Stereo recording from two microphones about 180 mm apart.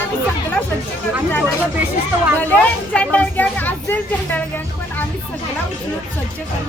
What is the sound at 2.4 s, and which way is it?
Speech, 5° left (ahead or behind).